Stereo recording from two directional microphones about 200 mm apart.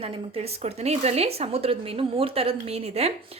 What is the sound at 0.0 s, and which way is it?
A woman's voice, 30° right (ahead or behind).